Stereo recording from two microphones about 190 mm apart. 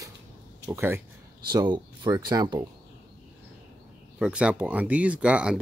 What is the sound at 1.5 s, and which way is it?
Speech, 25° right (ahead or behind).